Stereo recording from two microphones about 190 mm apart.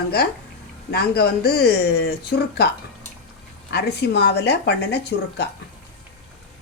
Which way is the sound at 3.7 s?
60° left (ahead or behind).